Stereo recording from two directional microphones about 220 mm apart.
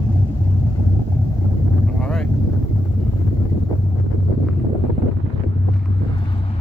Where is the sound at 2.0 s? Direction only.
Centre (ahead or behind).